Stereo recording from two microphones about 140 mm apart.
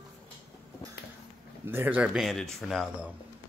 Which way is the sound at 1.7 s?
10° right (ahead or behind).